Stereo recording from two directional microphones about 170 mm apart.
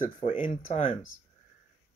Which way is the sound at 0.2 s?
30° left (ahead or behind).